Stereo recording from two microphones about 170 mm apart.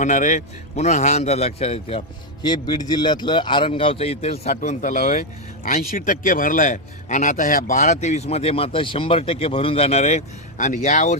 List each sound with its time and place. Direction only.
0.0 s a man's voice: 45° left (ahead or behind)